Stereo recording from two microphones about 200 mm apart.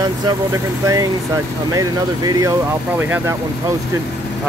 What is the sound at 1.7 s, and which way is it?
Speech, 15° right (ahead or behind).